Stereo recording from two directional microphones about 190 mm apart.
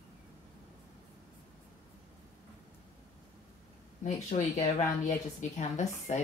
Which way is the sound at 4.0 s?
40° left (ahead or behind).